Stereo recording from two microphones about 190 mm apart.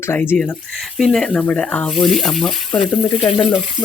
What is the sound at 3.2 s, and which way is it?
Speech, 25° left (ahead or behind).